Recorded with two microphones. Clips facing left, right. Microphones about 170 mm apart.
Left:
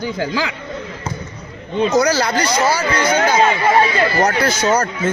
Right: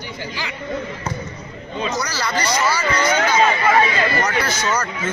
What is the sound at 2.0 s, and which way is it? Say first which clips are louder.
Speech: left 7 dB; 50° left (ahead or behind).